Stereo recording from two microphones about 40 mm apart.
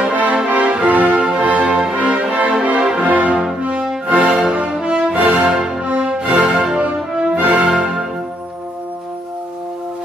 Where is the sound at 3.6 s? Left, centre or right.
Right.